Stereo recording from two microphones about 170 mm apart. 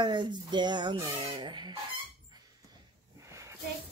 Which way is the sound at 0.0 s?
25° right (ahead or behind).